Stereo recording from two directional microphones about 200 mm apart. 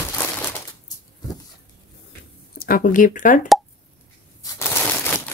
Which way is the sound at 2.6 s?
45° left (ahead or behind).